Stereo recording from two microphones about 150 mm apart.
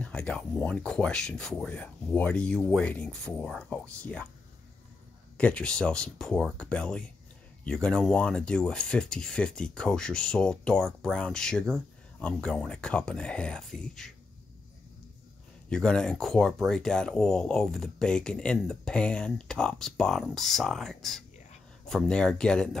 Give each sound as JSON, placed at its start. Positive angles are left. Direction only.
{"t": 0.0, "sound": "speech", "side_deg": 5}
{"t": 5.4, "sound": "speech", "side_deg": 5}
{"t": 15.7, "sound": "speech", "side_deg": 5}